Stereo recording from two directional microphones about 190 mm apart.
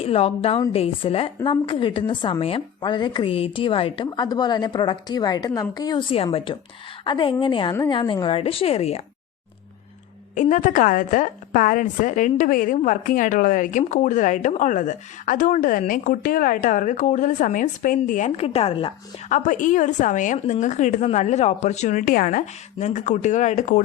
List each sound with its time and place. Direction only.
0.0 s a woman's voice: 30° left (ahead or behind)
10.3 s a woman's voice: 40° left (ahead or behind)
19.3 s a woman's voice: 40° left (ahead or behind)